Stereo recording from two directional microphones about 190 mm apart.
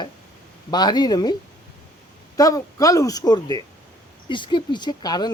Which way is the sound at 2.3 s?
20° left (ahead or behind).